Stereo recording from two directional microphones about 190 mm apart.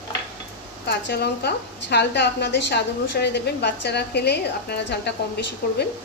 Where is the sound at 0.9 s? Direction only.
60° left (ahead or behind).